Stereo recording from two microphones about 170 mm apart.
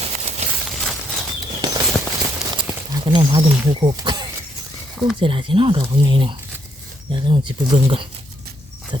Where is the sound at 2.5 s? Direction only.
25° right (ahead or behind).